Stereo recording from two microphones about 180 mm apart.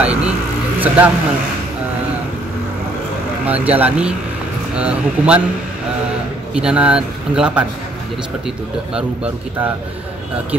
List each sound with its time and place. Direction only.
0.0 s speech: 5° right (ahead or behind)
3.4 s speech: 10° right (ahead or behind)
6.5 s speech: 5° right (ahead or behind)